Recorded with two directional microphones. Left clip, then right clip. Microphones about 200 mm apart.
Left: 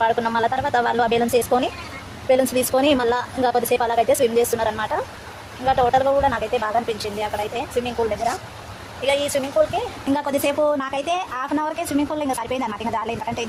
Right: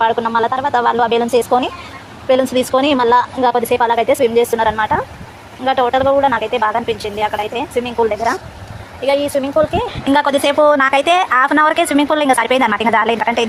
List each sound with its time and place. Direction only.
0.0 s speech: 5° right (ahead or behind)
9.0 s speech: 10° right (ahead or behind)